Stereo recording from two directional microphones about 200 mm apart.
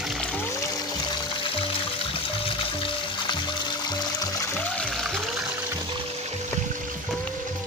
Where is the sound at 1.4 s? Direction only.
25° left (ahead or behind).